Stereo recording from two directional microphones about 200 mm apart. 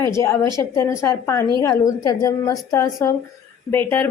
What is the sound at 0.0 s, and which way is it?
A woman's voice, 15° left (ahead or behind).